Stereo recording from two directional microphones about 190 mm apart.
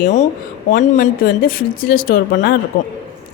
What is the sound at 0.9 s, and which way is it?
A woman's voice, 50° left (ahead or behind).